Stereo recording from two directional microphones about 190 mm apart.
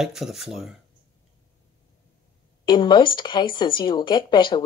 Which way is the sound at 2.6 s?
25° left (ahead or behind).